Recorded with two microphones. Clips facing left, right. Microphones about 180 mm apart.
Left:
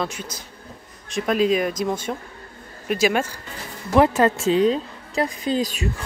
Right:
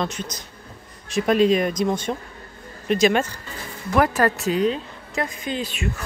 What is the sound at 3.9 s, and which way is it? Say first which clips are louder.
A woman's voice: left 3 dB; 25° left (ahead or behind).